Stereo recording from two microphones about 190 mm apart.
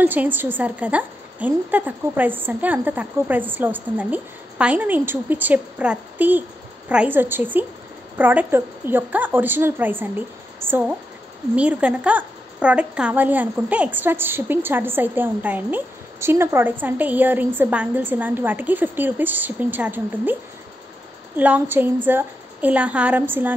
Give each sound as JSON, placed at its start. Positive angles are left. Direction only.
{"t": 0.0, "sound": "a woman's voice", "side_deg": -10}
{"t": 21.4, "sound": "a woman's voice", "side_deg": -10}